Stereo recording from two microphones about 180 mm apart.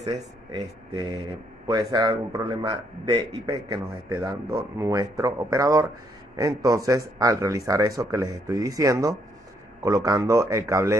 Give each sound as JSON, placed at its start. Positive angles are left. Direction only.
{"t": 0.0, "sound": "a man's voice", "side_deg": -25}